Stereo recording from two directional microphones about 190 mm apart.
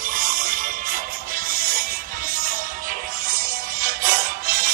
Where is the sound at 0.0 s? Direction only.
45° right (ahead or behind).